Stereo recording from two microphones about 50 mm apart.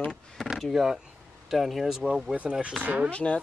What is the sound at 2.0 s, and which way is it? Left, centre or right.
Speech, centre.